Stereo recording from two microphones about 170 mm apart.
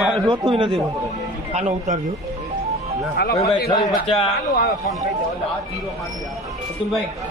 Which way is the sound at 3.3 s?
20° left (ahead or behind).